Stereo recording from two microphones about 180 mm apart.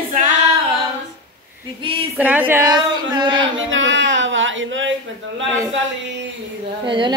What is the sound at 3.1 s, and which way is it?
Speech, 25° right (ahead or behind).